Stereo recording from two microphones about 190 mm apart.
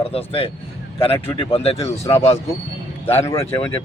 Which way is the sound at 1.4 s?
30° left (ahead or behind).